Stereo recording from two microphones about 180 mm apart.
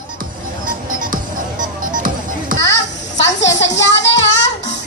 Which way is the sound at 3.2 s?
80° left.